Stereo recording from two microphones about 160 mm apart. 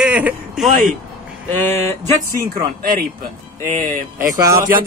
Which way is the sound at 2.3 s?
65° right (ahead or behind).